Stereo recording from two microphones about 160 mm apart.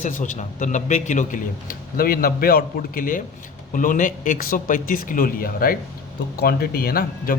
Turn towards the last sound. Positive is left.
turn(degrees=65)  # may be behind; listen again after turning